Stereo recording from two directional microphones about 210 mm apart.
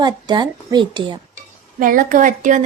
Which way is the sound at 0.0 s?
20° right (ahead or behind).